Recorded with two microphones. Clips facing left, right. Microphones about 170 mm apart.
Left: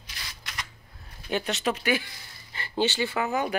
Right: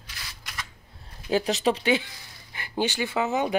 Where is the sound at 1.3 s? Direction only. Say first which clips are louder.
Right 4 dB; 35° right (ahead or behind).